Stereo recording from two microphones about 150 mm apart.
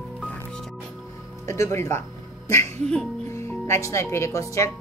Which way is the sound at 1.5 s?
20° left (ahead or behind).